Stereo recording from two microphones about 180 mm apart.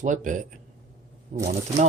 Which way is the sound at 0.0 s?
45° right (ahead or behind).